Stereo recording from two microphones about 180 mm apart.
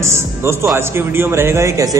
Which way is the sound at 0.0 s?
15° right (ahead or behind).